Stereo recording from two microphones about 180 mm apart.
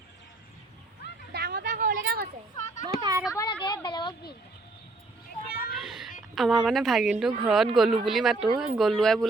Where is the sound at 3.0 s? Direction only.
25° right (ahead or behind).